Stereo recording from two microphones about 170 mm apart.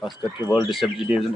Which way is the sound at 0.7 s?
Centre (ahead or behind).